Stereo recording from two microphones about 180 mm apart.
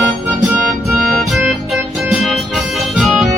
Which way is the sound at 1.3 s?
Centre (ahead or behind).